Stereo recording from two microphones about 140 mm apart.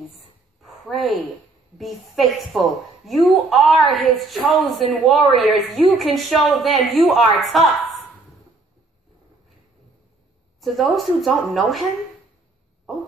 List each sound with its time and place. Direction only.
0.6 s a sound: centre (ahead or behind)
1.8 s a woman's voice: centre (ahead or behind)
10.6 s a woman's voice: centre (ahead or behind)